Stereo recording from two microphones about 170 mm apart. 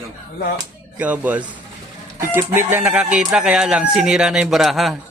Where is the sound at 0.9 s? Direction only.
10° right (ahead or behind).